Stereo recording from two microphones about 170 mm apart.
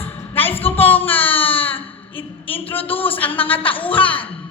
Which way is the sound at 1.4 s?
35° left (ahead or behind).